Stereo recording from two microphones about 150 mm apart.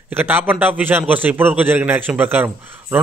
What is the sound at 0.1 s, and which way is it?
A man's voice, 10° right (ahead or behind).